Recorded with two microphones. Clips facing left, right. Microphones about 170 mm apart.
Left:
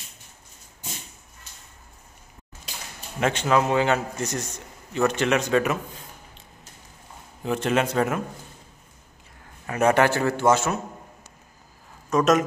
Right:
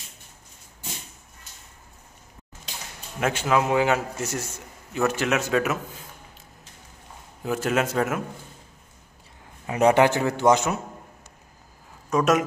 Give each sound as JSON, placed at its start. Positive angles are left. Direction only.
{"t": 3.2, "sound": "a man's voice", "side_deg": -5}
{"t": 7.4, "sound": "a man's voice", "side_deg": -5}
{"t": 9.7, "sound": "a man's voice", "side_deg": -15}
{"t": 12.1, "sound": "a man's voice", "side_deg": -10}